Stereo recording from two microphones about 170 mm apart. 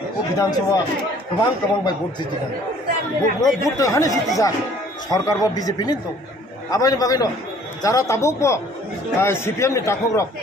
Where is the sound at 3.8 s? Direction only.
20° left (ahead or behind).